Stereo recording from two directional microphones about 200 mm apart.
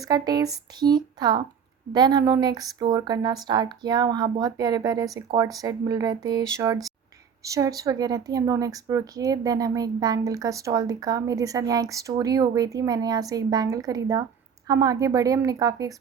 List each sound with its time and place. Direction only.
0.1 s speech: 20° right (ahead or behind)